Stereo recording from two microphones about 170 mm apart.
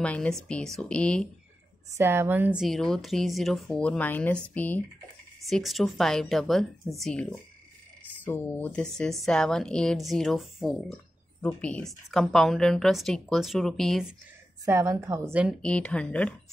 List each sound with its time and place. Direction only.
0.0 s a woman's voice: 5° left (ahead or behind)
2.0 s a woman's voice: 15° right (ahead or behind); by 14.0 s centre (ahead or behind)
14.6 s a woman's voice: 20° right (ahead or behind)
15.6 s speech: 5° left (ahead or behind)